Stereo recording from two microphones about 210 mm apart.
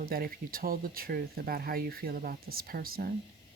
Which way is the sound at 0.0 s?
45° right (ahead or behind).